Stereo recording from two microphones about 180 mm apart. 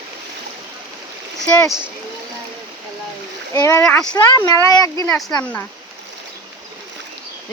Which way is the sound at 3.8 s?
5° left (ahead or behind).